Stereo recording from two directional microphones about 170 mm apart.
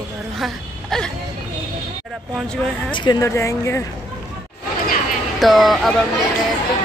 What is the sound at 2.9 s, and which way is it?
Speech, 25° left (ahead or behind).